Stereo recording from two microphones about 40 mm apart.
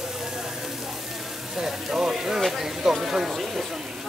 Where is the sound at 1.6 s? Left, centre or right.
Centre.